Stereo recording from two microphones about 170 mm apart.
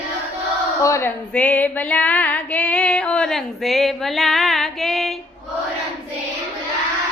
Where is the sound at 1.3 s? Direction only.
10° left (ahead or behind).